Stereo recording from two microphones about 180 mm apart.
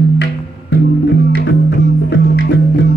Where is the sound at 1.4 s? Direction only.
70° left (ahead or behind).